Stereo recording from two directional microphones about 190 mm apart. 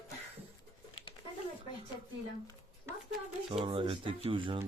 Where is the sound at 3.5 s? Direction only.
25° right (ahead or behind).